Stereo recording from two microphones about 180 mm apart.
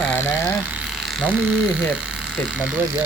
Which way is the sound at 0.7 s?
Centre (ahead or behind).